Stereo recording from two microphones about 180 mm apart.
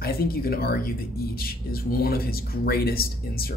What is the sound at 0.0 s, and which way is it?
Speech, 55° left (ahead or behind).